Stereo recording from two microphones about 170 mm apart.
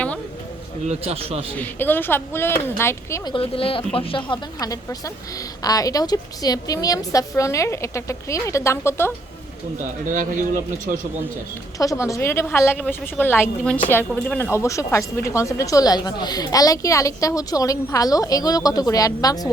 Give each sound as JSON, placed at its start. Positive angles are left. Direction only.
{"t": 0.9, "sound": "a man's voice", "side_deg": -35}
{"t": 1.5, "sound": "a woman's voice", "side_deg": 10}
{"t": 3.3, "sound": "a woman's voice", "side_deg": 35}
{"t": 10.1, "sound": "speech", "side_deg": -50}
{"t": 11.8, "sound": "a woman's voice", "side_deg": 20}